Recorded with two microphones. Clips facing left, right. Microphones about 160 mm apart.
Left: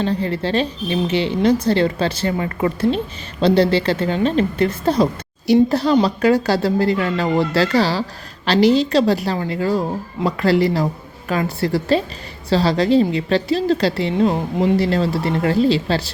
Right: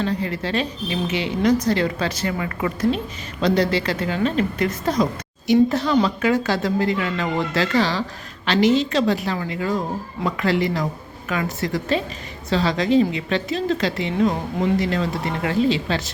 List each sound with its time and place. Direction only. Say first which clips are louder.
0.0 s a woman's voice: left 4 dB; 30° left (ahead or behind)